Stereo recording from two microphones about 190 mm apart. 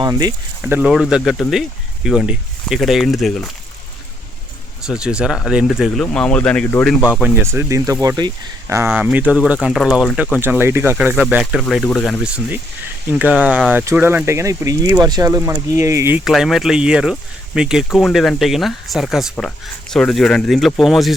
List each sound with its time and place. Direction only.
0.0 s speech: 20° right (ahead or behind)
0.6 s speech: 5° right (ahead or behind)
4.9 s speech: 5° right (ahead or behind)
7.0 s speech: 5° right (ahead or behind)
10.3 s speech: 10° right (ahead or behind)
16.2 s speech: centre (ahead or behind)